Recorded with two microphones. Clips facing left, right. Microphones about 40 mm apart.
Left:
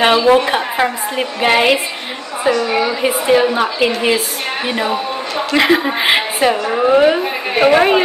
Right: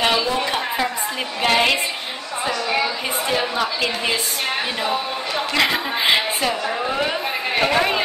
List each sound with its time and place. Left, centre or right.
0.0 s a woman's voice: left
5.5 s a woman's voice: centre